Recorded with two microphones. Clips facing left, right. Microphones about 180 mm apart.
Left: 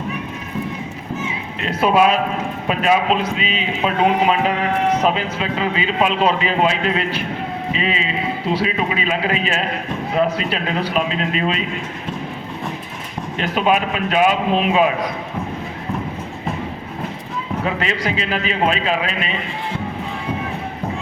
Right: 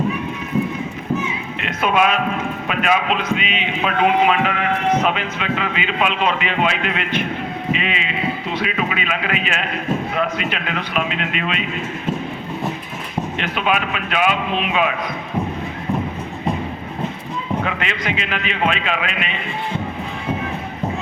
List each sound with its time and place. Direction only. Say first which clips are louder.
1.6 s a man's voice: left 3 dB; 35° left (ahead or behind)
13.4 s a man's voice: left 5 dB; 40° left (ahead or behind)
17.7 s a man's voice: left 2 dB; 35° left (ahead or behind)